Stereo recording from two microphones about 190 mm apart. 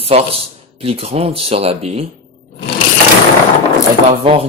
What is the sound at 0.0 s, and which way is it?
A man's voice, 30° right (ahead or behind).